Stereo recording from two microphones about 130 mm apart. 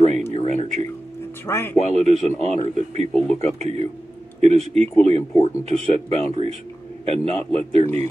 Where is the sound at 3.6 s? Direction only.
55° right (ahead or behind).